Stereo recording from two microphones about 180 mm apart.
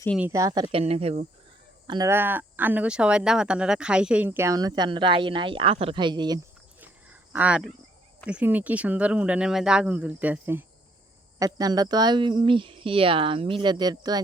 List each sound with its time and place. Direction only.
0.2 s speech: 15° right (ahead or behind); by 1.3 s 40° right (ahead or behind)
1.9 s speech: 20° right (ahead or behind)
6.7 s a sound: 10° right (ahead or behind)
8.3 s speech: 10° right (ahead or behind)